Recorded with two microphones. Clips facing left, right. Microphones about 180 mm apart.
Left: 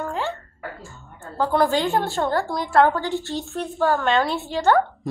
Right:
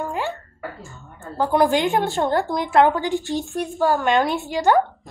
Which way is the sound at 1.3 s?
15° right (ahead or behind).